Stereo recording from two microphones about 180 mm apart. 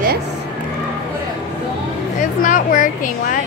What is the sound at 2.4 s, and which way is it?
Speech, 45° left (ahead or behind).